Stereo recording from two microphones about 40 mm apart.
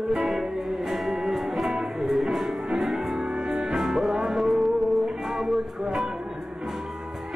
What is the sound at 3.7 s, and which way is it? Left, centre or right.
Music, centre.